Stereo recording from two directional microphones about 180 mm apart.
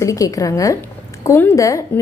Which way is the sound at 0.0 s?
20° left (ahead or behind).